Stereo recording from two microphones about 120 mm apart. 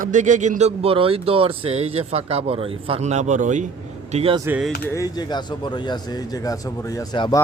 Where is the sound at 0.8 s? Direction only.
50° right (ahead or behind); by 3.7 s 90° right.